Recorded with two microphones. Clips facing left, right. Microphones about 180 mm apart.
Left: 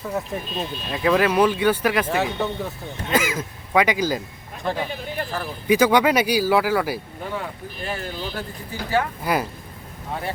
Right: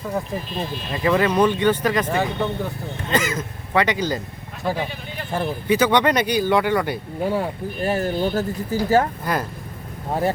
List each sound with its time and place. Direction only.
0.9 s speech: centre (ahead or behind)
5.3 s speech: 25° right (ahead or behind)
5.6 s speech: 10° left (ahead or behind)
7.2 s speech: 40° right (ahead or behind)
9.2 s speech: 10° left (ahead or behind)
10.1 s speech: 40° right (ahead or behind)